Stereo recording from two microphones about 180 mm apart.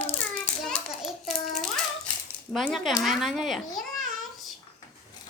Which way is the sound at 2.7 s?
Centre (ahead or behind).